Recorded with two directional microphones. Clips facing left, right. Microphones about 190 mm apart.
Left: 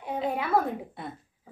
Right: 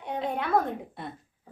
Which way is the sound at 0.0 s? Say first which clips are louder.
Left 1 dB; centre (ahead or behind).